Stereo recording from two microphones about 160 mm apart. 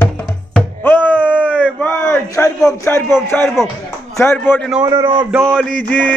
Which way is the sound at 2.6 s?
20° left (ahead or behind).